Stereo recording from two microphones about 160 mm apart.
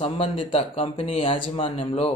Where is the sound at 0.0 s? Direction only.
35° left (ahead or behind).